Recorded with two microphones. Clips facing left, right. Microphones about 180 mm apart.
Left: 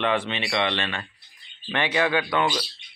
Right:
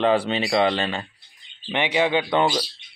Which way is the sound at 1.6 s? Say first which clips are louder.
Right 2 dB; 20° right (ahead or behind).